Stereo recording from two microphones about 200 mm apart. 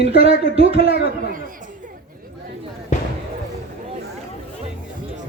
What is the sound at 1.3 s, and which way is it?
Chatter, 45° right (ahead or behind).